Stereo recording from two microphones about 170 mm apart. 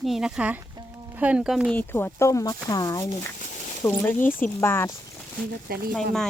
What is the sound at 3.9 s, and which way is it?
Speech, 10° left (ahead or behind).